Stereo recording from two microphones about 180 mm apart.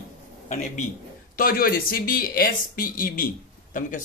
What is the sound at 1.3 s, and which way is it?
Speech, 55° left (ahead or behind).